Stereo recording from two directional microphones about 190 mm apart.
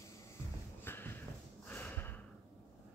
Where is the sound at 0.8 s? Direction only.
10° left (ahead or behind).